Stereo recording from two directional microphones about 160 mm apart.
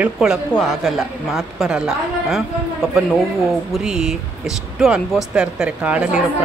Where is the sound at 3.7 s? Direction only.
5° right (ahead or behind).